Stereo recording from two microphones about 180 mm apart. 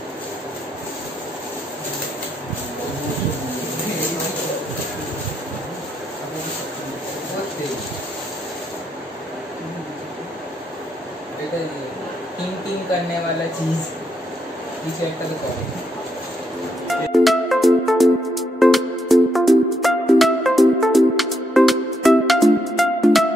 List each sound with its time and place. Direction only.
16.8 s music: centre (ahead or behind)